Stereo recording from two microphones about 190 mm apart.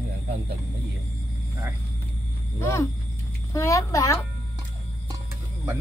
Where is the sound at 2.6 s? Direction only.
15° left (ahead or behind).